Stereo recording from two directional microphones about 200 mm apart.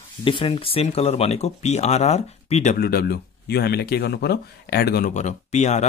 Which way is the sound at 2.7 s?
50° left (ahead or behind).